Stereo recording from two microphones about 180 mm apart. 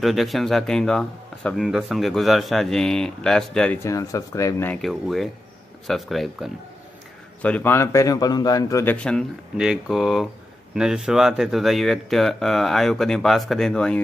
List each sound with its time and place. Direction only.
0.0 s speech: centre (ahead or behind); by 4.7 s 15° left (ahead or behind)
4.8 s speech: centre (ahead or behind); by 8.9 s 20° left (ahead or behind)
8.9 s speech: 5° left (ahead or behind)